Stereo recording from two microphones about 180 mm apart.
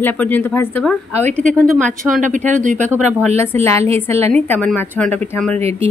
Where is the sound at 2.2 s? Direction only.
45° right (ahead or behind).